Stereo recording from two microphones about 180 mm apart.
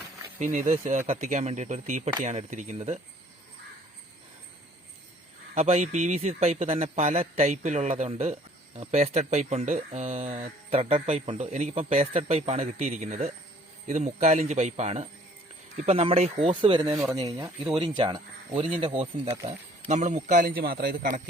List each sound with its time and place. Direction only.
0.3 s speech: 40° right (ahead or behind)
5.5 s a man's voice: 40° right (ahead or behind); by 21.2 s 55° right (ahead or behind)